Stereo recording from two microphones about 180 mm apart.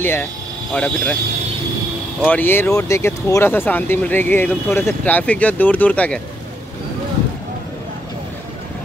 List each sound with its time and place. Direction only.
0.0 s speech: 10° left (ahead or behind)
2.2 s speech: 10° left (ahead or behind)